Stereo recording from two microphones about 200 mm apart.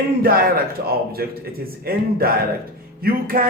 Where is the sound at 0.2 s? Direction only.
45° right (ahead or behind).